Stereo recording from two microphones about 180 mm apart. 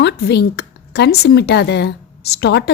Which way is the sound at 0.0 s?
65° left (ahead or behind).